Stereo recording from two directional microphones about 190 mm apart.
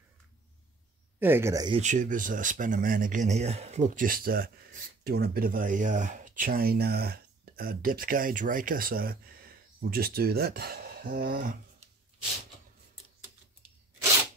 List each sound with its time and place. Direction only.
1.2 s speech: 10° right (ahead or behind)
1.8 s speech: 40° right (ahead or behind)